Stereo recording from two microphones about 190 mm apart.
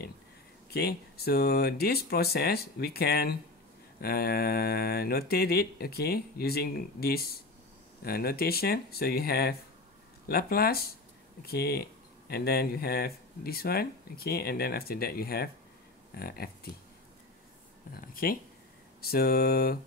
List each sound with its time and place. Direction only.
0.7 s speech: 55° left (ahead or behind)
17.9 s speech: 50° left (ahead or behind)